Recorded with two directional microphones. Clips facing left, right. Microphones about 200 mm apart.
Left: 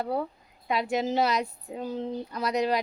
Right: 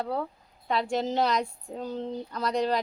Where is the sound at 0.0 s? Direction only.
10° left (ahead or behind).